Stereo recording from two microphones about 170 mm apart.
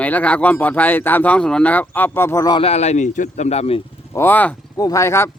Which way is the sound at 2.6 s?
40° left (ahead or behind).